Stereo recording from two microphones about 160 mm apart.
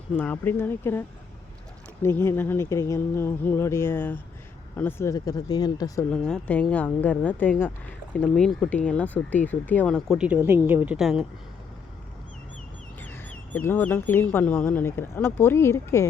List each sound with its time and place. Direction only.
0.2 s speech: 10° left (ahead or behind)
6.1 s speech: 5° left (ahead or behind)
10.2 s a woman's voice: 10° right (ahead or behind)
13.0 s speech: 10° left (ahead or behind)